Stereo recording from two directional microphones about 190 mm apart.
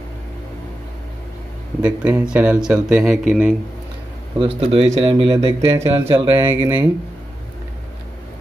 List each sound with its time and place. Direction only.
1.8 s speech: 5° right (ahead or behind)
4.4 s speech: 30° right (ahead or behind)
6.3 s speech: 15° right (ahead or behind)